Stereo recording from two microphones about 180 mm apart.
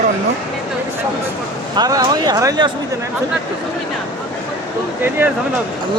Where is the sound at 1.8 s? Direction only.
20° right (ahead or behind).